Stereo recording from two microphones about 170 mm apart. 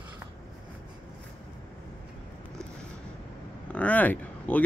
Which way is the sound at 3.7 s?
10° left (ahead or behind).